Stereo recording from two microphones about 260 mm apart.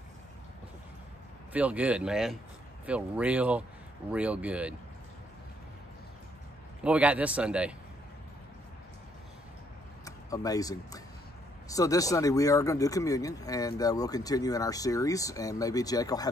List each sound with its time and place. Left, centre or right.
1.5 s speech: centre
6.8 s speech: centre
10.0 s speech: centre